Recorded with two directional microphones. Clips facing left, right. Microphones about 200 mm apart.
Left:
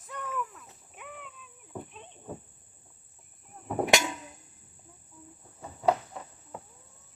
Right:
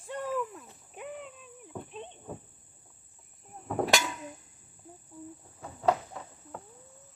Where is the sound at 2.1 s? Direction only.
5° left (ahead or behind).